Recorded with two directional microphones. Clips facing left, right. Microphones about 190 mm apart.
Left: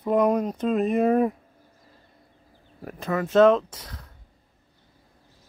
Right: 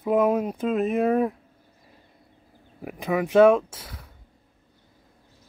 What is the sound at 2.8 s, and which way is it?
Speech, 15° right (ahead or behind).